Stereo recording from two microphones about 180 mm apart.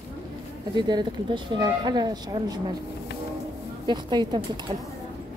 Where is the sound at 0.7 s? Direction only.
25° right (ahead or behind).